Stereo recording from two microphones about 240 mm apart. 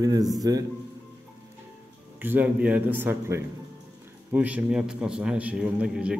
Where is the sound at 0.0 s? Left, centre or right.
Centre.